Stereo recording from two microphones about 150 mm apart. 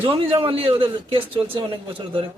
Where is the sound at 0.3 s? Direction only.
35° right (ahead or behind).